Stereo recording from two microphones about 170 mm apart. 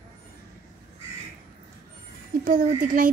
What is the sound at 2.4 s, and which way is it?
Speech, 55° right (ahead or behind).